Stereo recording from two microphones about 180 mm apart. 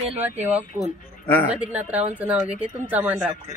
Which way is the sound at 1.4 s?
5° right (ahead or behind).